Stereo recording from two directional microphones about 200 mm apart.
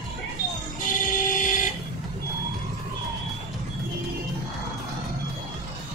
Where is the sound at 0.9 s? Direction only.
40° left (ahead or behind).